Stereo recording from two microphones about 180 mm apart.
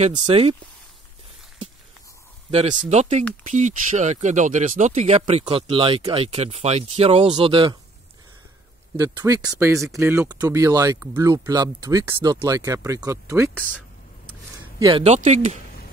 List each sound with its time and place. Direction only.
0.0 s speech: 35° right (ahead or behind)
2.5 s speech: 40° right (ahead or behind)
8.9 s speech: 15° right (ahead or behind)
14.8 s speech: 25° right (ahead or behind)
15.0 s speech: 40° right (ahead or behind)